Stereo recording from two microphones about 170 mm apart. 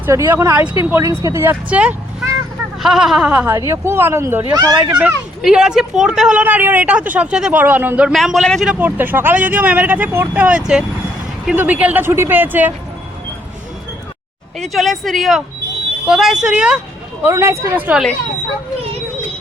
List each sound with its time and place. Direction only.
0.0 s speech: 15° right (ahead or behind)
4.5 s speech: 25° right (ahead or behind)
4.9 s speech: 10° right (ahead or behind)
8.7 s speech: 10° right (ahead or behind)
14.6 s speech: centre (ahead or behind)
17.2 s speech: 15° right (ahead or behind)